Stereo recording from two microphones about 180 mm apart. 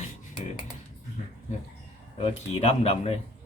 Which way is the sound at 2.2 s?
35° left (ahead or behind).